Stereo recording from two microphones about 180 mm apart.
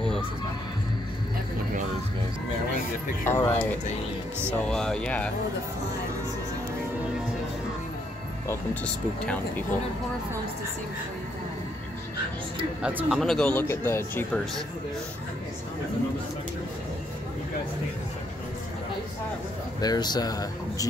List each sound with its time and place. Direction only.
3.3 s speech: 15° left (ahead or behind)
8.5 s speech: 5° left (ahead or behind)
12.8 s speech: 5° right (ahead or behind); by 14.4 s 10° left (ahead or behind)
19.8 s speech: 20° left (ahead or behind)